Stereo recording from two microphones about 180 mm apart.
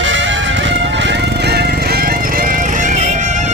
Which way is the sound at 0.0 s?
90° right.